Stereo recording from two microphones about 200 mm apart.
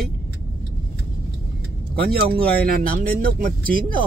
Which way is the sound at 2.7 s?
45° right (ahead or behind).